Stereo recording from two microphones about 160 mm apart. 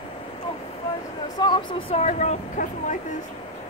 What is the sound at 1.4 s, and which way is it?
Speech, 30° left (ahead or behind).